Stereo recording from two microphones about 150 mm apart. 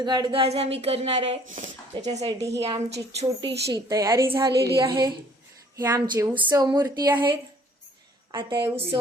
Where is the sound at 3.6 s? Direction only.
25° right (ahead or behind).